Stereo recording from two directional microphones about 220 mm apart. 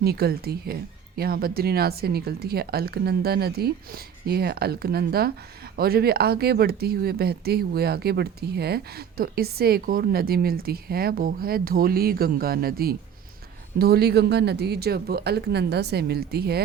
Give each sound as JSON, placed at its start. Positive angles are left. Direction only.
{"t": 0.0, "sound": "speech", "side_deg": -45}